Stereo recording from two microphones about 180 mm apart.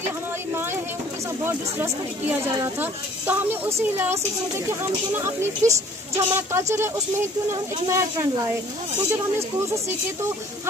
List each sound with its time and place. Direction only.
1.4 s speech: 10° right (ahead or behind)